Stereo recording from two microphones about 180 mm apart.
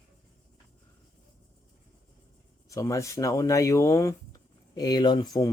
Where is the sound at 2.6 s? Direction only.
15° left (ahead or behind).